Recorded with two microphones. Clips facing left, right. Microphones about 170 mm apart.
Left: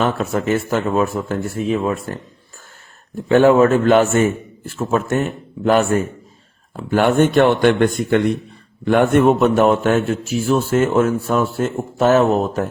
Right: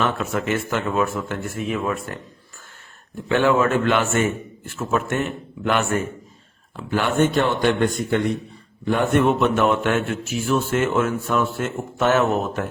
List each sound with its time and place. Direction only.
0.0 s speech: 35° left (ahead or behind)
3.2 s speech: 40° left (ahead or behind)
6.7 s speech: 50° left (ahead or behind)
8.8 s a man's voice: 65° left (ahead or behind)
9.2 s speech: 40° left (ahead or behind)